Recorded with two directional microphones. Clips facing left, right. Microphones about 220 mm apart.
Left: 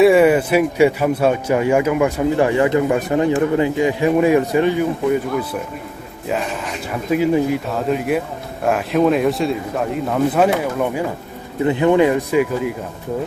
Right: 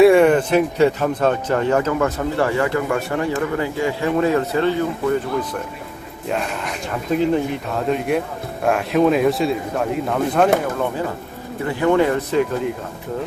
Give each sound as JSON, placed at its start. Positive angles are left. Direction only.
{"t": 0.0, "sound": "speech", "side_deg": 5}
{"t": 7.1, "sound": "speech", "side_deg": 5}